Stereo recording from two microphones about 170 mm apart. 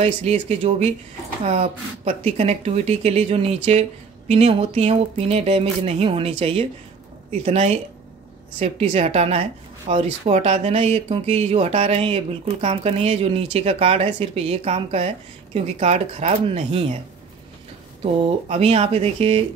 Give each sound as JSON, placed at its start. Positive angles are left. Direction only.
{"t": 0.0, "sound": "speech", "side_deg": -40}
{"t": 18.0, "sound": "speech", "side_deg": -35}